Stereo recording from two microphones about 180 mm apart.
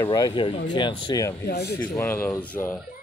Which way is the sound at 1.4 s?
65° left (ahead or behind).